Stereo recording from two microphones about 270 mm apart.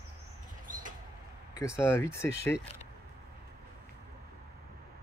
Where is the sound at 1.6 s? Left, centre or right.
Centre.